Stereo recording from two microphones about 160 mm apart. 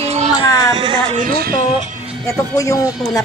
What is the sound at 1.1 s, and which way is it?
Music, 65° right (ahead or behind).